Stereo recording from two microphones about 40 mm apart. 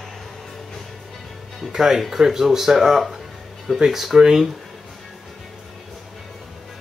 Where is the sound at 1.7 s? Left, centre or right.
Centre.